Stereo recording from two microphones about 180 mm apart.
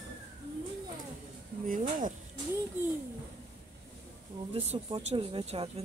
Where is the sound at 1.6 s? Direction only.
45° right (ahead or behind).